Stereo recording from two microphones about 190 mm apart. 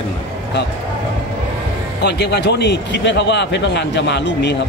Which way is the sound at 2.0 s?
60° left (ahead or behind).